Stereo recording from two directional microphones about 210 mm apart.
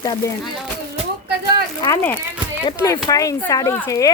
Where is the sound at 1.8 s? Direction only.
10° left (ahead or behind).